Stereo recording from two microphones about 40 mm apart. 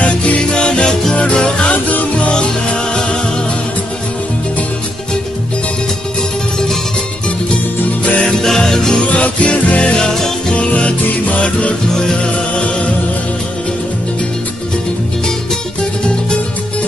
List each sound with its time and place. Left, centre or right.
0.0 s music: left
8.2 s music: centre
9.1 s music: left
11.9 s music: centre